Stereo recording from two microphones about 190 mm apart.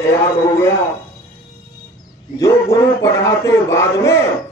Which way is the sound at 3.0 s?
15° left (ahead or behind).